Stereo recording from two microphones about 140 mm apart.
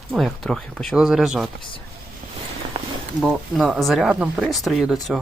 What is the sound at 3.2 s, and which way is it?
Speech, 5° right (ahead or behind).